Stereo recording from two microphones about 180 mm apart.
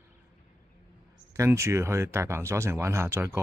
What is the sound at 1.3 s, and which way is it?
Speech, 15° right (ahead or behind).